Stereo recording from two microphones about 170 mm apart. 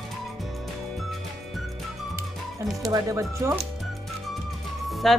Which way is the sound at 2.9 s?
20° right (ahead or behind).